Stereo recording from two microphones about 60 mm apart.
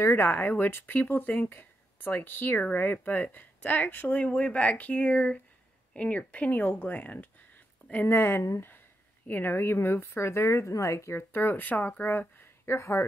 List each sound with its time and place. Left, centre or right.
0.1 s speech: left